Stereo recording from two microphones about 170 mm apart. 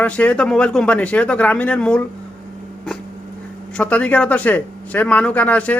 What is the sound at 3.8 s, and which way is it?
A man's voice, 5° left (ahead or behind).